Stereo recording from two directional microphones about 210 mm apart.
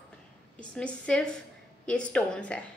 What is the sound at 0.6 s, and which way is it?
A woman's voice, 5° left (ahead or behind).